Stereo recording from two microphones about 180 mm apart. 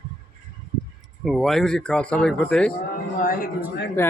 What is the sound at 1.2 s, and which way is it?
Speech, centre (ahead or behind).